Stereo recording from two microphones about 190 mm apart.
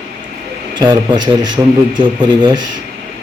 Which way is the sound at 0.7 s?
20° right (ahead or behind).